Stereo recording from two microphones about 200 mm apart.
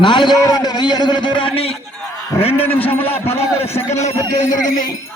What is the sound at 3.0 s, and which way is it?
A man's voice, 30° left (ahead or behind).